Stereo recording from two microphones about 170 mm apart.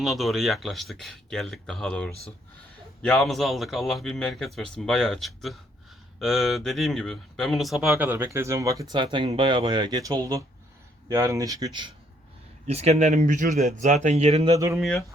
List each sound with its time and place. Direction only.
0.0 s speech: centre (ahead or behind); by 11.9 s 25° right (ahead or behind)
12.6 s speech: 40° right (ahead or behind)
14.5 s speech: 20° right (ahead or behind)
14.8 s speech: centre (ahead or behind)